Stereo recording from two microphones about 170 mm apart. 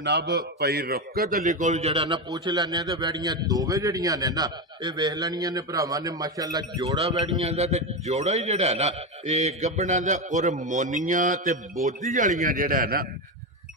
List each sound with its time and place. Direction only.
0.0 s a man's voice: 85° right; by 1.5 s 60° right (ahead or behind)
1.5 s a man's voice: 45° right (ahead or behind); by 7.1 s 20° right (ahead or behind)
7.2 s a man's voice: 40° right (ahead or behind); by 13.0 s 55° right (ahead or behind)